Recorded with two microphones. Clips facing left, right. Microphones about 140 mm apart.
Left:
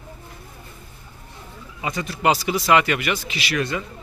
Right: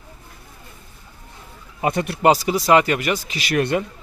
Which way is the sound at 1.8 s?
55° right (ahead or behind).